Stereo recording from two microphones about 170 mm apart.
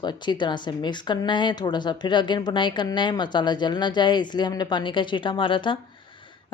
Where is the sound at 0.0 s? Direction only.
25° left (ahead or behind).